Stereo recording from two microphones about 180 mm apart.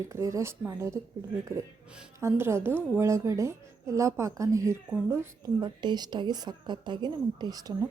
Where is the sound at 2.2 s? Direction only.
15° right (ahead or behind).